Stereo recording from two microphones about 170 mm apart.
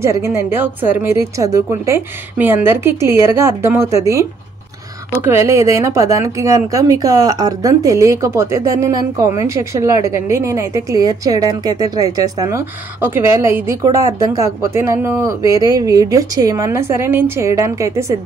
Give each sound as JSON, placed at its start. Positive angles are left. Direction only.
{"t": 0.0, "sound": "a woman's voice", "side_deg": -15}